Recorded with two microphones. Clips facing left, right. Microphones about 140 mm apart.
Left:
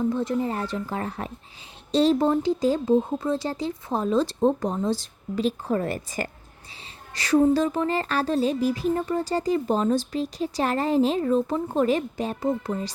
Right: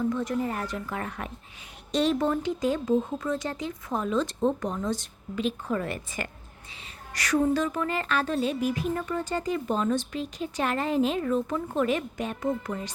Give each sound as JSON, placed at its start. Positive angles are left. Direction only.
{"t": 0.0, "sound": "speech", "side_deg": 30}
{"t": 1.9, "sound": "music", "side_deg": 30}